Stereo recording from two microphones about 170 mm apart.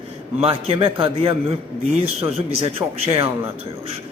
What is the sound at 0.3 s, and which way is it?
A man's voice, 35° right (ahead or behind).